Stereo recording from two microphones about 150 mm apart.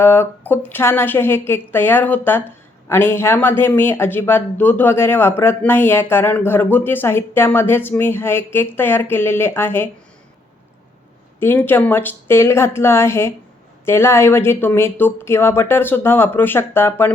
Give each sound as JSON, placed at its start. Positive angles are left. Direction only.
{"t": 0.0, "sound": "a man's voice", "side_deg": 15}
{"t": 11.3, "sound": "a man's voice", "side_deg": 15}